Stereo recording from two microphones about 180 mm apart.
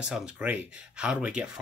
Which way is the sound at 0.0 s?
5° right (ahead or behind).